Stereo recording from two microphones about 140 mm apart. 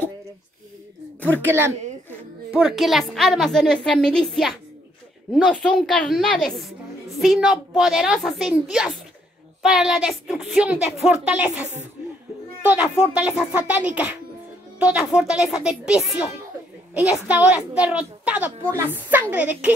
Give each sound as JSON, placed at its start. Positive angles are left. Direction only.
{"t": 1.4, "sound": "a child's voice", "side_deg": -15}
{"t": 2.5, "sound": "a woman's voice", "side_deg": -5}
{"t": 12.6, "sound": "a child's voice", "side_deg": -10}